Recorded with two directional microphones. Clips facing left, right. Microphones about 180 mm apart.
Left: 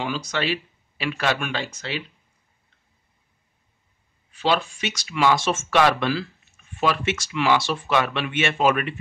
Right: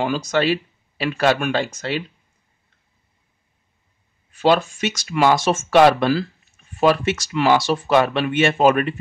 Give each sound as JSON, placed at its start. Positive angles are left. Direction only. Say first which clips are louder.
{"t": 0.0, "sound": "speech", "louder": "right 7 dB", "side_deg": -45}
{"t": 4.3, "sound": "speech", "louder": "right 6 dB", "side_deg": -45}